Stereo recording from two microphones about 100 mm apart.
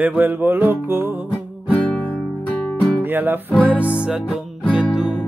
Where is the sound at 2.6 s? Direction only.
10° left (ahead or behind).